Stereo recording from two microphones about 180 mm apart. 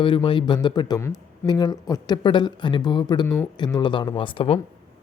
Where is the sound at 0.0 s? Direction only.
30° left (ahead or behind).